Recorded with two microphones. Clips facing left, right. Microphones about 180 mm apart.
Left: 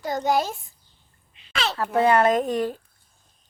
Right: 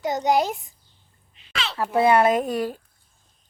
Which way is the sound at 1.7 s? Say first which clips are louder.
Right 1 dB; 10° right (ahead or behind).